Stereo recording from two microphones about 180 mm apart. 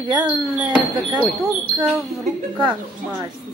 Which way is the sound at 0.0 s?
20° right (ahead or behind).